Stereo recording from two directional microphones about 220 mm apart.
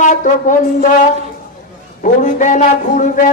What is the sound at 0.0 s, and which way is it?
Speech, 35° left (ahead or behind).